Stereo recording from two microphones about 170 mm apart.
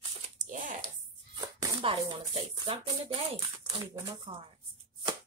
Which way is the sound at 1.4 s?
30° right (ahead or behind).